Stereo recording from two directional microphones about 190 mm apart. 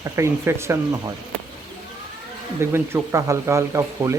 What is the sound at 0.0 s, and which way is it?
Speech, 15° right (ahead or behind).